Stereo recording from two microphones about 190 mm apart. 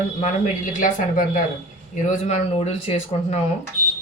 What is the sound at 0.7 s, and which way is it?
A woman's voice, 45° left (ahead or behind).